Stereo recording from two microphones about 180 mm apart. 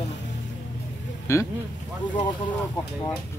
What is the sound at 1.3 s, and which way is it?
Speech, 15° left (ahead or behind).